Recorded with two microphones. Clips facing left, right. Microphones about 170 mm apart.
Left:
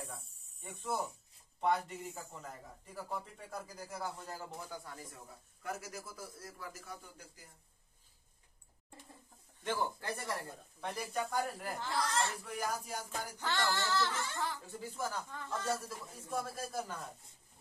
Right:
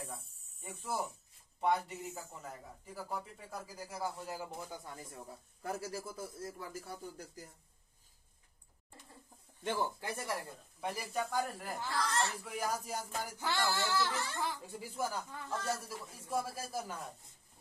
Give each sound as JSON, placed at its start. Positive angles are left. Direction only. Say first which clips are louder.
{"t": 0.0, "sound": "snake", "louder": "right 1 dB", "side_deg": 0}
{"t": 1.6, "sound": "a sound", "louder": "even", "side_deg": -5}
{"t": 4.5, "sound": "a man's voice", "louder": "right 1 dB", "side_deg": -20}
{"t": 5.6, "sound": "a man's voice", "louder": "right 3 dB", "side_deg": -30}
{"t": 9.6, "sound": "speech", "louder": "right 1 dB", "side_deg": -25}
{"t": 10.8, "sound": "a sound", "louder": "right 1 dB", "side_deg": 0}